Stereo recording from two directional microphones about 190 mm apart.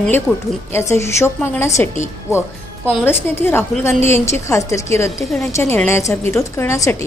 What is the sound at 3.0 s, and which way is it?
Speech, 10° left (ahead or behind).